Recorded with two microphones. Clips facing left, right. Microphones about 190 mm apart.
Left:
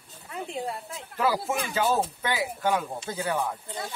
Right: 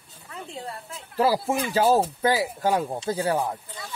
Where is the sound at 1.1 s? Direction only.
35° right (ahead or behind).